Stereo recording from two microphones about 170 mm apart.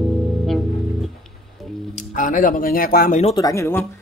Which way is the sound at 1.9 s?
50° left (ahead or behind).